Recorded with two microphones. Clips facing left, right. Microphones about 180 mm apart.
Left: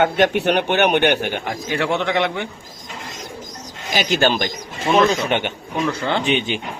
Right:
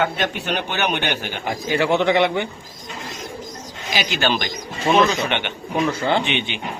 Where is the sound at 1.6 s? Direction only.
Centre (ahead or behind).